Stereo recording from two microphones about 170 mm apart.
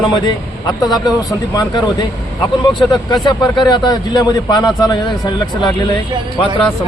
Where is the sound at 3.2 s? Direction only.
25° left (ahead or behind).